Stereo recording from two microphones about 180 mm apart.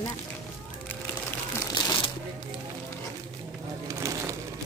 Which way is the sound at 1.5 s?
25° left (ahead or behind).